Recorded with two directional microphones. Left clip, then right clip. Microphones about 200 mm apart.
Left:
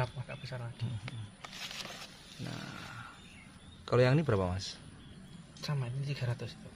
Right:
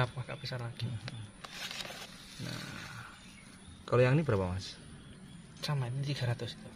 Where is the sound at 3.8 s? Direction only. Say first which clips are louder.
Even; 10° left (ahead or behind).